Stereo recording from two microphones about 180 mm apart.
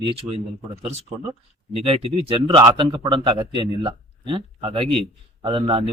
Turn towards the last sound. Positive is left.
turn(degrees=-30)  # may be behind; listen again after turning